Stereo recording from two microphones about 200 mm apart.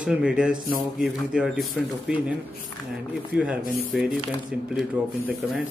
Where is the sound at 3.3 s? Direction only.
5° right (ahead or behind).